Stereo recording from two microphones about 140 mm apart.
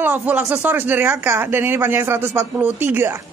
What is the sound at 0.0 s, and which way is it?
Speech, 15° right (ahead or behind).